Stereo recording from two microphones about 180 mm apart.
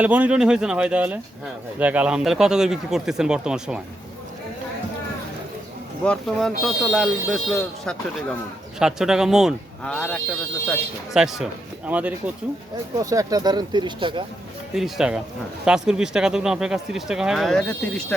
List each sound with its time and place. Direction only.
0.0 s speech: 10° right (ahead or behind)
6.1 s speech: centre (ahead or behind)
13.0 s speech: 20° right (ahead or behind)
14.8 s speech: centre (ahead or behind)